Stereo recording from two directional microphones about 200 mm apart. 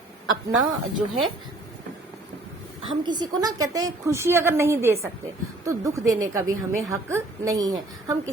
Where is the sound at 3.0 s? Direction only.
20° right (ahead or behind).